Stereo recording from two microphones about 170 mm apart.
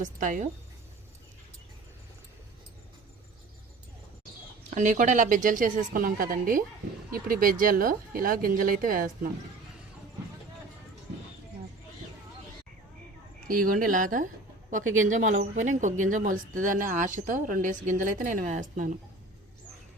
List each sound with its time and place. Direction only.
0.0 s speech: 50° right (ahead or behind)
4.7 s speech: 50° right (ahead or behind)
13.5 s speech: 55° right (ahead or behind)